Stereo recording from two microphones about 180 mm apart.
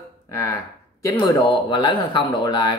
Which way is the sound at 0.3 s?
15° left (ahead or behind).